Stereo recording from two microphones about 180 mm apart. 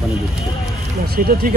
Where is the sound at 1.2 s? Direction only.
50° right (ahead or behind).